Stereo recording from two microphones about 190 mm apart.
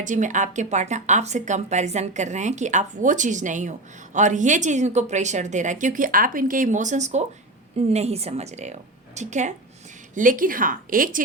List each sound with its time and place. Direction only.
0.0 s speech: 40° right (ahead or behind)